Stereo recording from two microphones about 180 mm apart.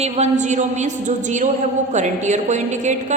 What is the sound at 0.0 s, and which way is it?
A woman's voice, 40° right (ahead or behind).